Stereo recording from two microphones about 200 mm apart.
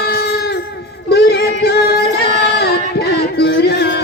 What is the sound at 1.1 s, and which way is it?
Music, 55° left (ahead or behind).